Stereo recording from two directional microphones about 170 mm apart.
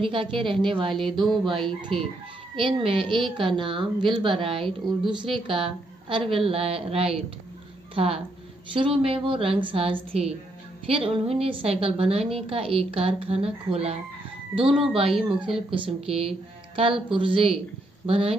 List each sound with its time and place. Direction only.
0.0 s a woman's voice: 30° right (ahead or behind)